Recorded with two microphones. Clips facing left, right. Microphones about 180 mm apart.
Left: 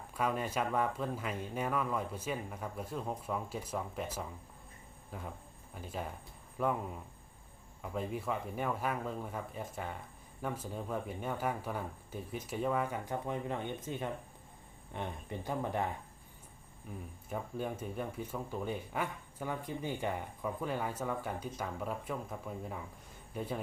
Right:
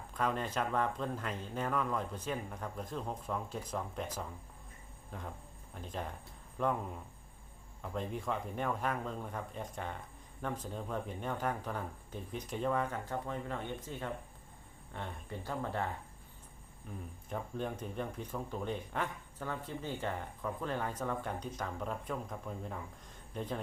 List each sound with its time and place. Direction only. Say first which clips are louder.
0.1 s speech: left 1 dB; 10° left (ahead or behind)